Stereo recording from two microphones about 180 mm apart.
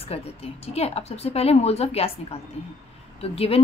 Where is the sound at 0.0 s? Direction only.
35° left (ahead or behind).